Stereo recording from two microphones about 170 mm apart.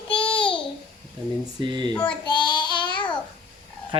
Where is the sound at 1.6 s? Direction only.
25° right (ahead or behind).